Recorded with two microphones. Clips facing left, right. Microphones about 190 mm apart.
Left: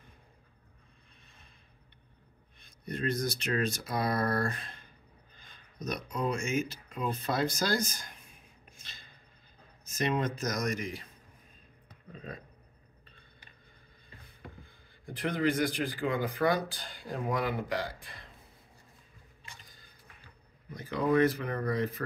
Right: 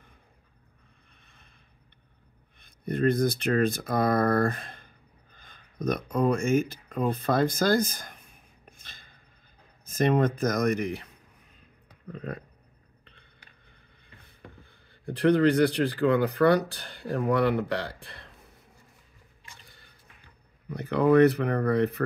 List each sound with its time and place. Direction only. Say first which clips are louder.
2.6 s speech: right 9 dB; 55° right (ahead or behind)
5.3 s a sound: right 2 dB; 50° right (ahead or behind)
9.9 s speech: right 7 dB; 55° right (ahead or behind)
12.1 s speech: right 7 dB; 60° right (ahead or behind)
14.7 s speech: right 8 dB; 70° right (ahead or behind)
19.6 s a sound: right 2 dB; 70° right (ahead or behind)
20.7 s speech: right 7 dB; 65° right (ahead or behind)